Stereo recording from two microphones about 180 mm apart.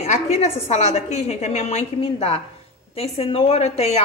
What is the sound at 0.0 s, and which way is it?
A woman's voice, 35° left (ahead or behind).